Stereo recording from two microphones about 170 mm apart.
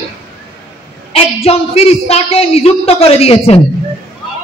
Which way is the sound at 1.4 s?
35° left (ahead or behind).